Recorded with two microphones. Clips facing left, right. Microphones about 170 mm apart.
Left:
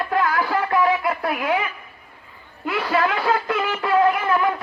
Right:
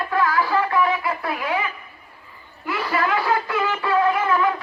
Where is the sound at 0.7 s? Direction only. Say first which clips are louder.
Left 2 dB; 65° left (ahead or behind).